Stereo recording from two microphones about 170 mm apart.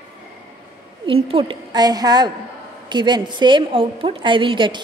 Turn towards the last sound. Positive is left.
turn(degrees=-30)  # may be behind; listen again after turning